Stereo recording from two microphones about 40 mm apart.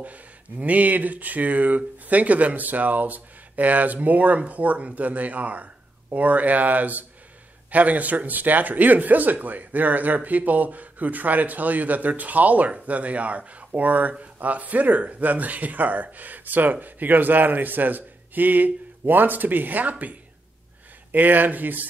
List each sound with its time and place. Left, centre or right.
0.0 s speech: right